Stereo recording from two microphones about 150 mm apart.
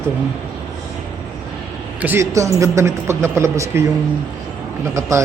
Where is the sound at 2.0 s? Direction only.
15° right (ahead or behind).